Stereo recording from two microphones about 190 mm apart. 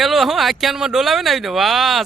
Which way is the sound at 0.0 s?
Centre (ahead or behind).